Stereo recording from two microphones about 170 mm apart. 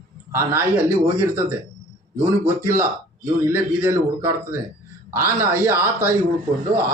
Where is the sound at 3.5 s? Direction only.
15° right (ahead or behind).